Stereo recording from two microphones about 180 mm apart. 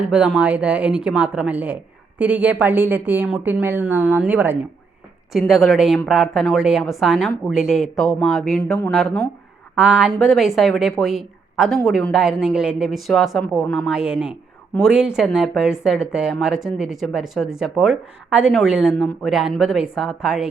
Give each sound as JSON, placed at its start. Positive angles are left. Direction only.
{"t": 0.1, "sound": "speech", "side_deg": -5}
{"t": 5.3, "sound": "speech", "side_deg": 0}